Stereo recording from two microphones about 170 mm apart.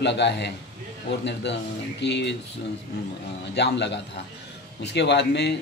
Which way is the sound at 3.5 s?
90° left.